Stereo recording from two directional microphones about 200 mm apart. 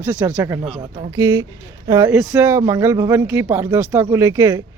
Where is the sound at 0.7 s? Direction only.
35° right (ahead or behind).